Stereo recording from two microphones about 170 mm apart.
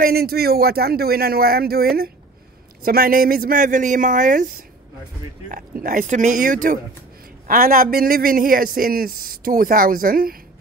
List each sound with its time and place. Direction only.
0.0 s a man's voice: 65° right (ahead or behind); by 4.5 s 50° right (ahead or behind)
5.5 s a man's voice: 55° right (ahead or behind)